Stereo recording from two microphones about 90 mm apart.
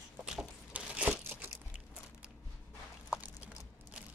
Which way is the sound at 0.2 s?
10° right (ahead or behind).